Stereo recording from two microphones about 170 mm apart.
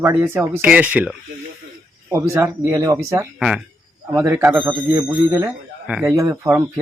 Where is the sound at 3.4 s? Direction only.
5° right (ahead or behind).